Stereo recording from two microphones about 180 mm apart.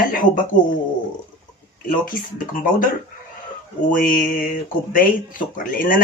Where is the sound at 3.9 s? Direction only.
50° left (ahead or behind).